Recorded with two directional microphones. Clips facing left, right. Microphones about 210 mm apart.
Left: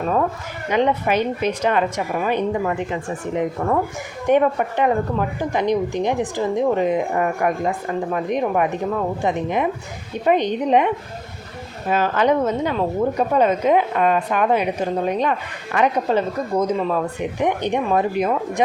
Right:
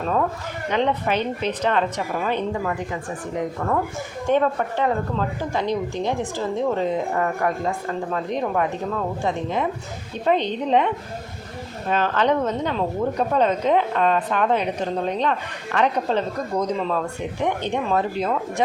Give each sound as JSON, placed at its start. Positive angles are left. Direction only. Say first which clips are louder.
{"t": 0.0, "sound": "a woman's voice", "louder": "left 2 dB", "side_deg": 10}